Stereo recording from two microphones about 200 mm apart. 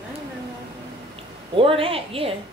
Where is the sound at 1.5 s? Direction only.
25° right (ahead or behind).